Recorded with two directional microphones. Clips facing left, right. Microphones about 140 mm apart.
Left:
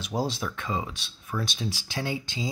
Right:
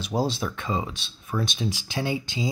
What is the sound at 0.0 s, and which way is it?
Speech, 30° right (ahead or behind).